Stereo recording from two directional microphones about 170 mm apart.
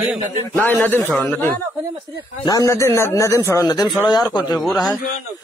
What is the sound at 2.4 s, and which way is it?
A man's voice, 20° left (ahead or behind).